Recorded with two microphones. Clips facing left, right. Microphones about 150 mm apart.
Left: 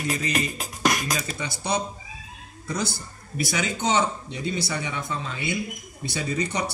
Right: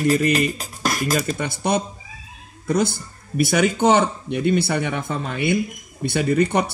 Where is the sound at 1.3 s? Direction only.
55° right (ahead or behind).